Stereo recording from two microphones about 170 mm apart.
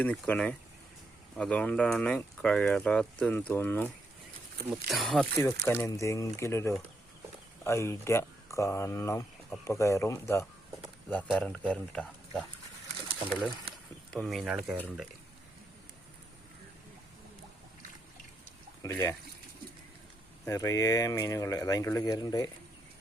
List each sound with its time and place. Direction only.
0.0 s speech: 10° left (ahead or behind)
13.7 s a sound: 65° right (ahead or behind)
14.1 s speech: centre (ahead or behind)
18.8 s speech: 20° left (ahead or behind)
20.4 s speech: 20° left (ahead or behind)